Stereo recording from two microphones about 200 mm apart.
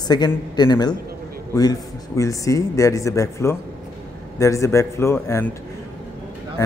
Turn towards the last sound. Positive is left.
turn(degrees=20)  # may be behind; listen again after turning